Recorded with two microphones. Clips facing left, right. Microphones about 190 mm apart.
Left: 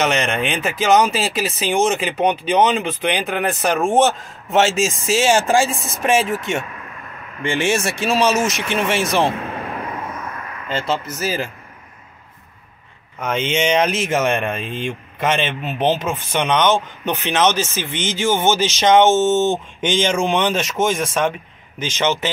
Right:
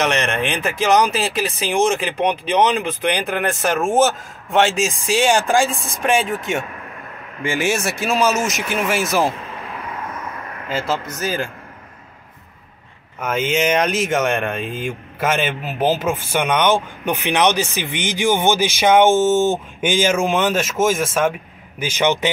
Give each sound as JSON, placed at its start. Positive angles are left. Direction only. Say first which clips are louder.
{"t": 0.0, "sound": "speech", "louder": "even", "side_deg": 0}
{"t": 10.7, "sound": "speech", "louder": "even", "side_deg": 0}
{"t": 13.2, "sound": "speech", "louder": "right 1 dB", "side_deg": -5}